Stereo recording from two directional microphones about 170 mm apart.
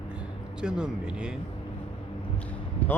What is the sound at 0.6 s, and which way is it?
Speech, 5° right (ahead or behind).